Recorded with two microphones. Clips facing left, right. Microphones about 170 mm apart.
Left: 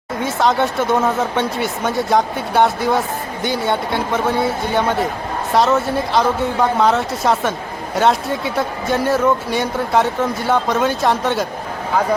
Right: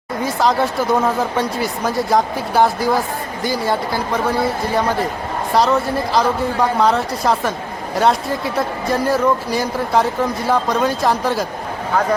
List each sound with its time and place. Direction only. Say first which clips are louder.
0.2 s speech: even; centre (ahead or behind)